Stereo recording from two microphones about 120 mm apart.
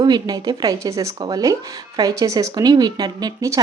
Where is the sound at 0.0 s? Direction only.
35° right (ahead or behind).